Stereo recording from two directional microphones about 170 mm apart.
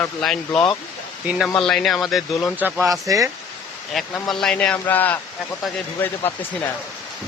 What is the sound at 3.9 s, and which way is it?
A man's voice, centre (ahead or behind).